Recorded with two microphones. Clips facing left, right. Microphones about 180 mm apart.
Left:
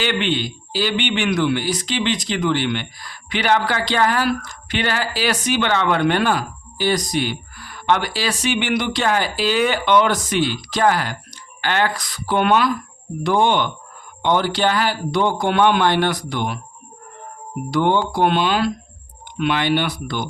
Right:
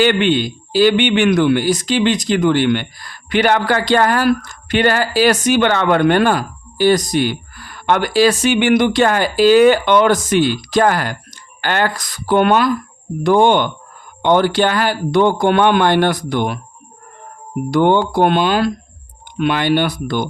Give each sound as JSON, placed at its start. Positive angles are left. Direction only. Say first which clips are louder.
{"t": 0.0, "sound": "a man's voice", "louder": "right 7 dB", "side_deg": -50}
{"t": 17.7, "sound": "a man's voice", "louder": "right 5 dB", "side_deg": -55}